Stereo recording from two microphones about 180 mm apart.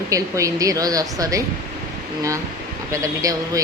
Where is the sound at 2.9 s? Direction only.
20° right (ahead or behind).